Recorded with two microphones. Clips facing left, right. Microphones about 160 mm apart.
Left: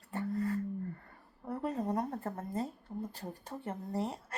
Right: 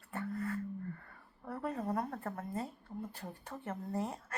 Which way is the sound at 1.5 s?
20° left (ahead or behind).